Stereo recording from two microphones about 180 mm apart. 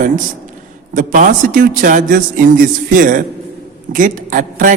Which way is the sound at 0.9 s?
45° right (ahead or behind).